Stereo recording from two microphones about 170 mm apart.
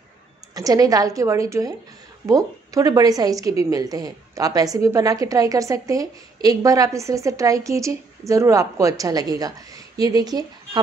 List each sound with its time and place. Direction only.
0.6 s a woman's voice: 20° right (ahead or behind)